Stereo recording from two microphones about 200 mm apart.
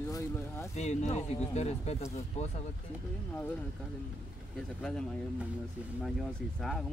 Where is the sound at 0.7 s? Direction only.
35° left (ahead or behind).